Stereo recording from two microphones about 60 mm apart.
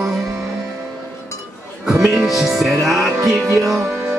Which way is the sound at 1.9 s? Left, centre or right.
Centre.